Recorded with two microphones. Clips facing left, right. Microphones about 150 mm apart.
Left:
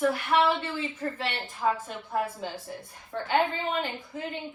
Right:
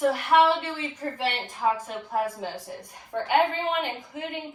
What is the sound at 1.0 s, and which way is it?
A woman's voice, 40° right (ahead or behind).